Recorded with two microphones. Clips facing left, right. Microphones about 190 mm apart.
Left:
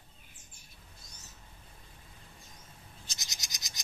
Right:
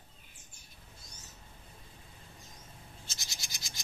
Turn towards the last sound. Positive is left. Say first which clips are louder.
# right 1 dB
turn(degrees=20)  # may be behind; listen again after turning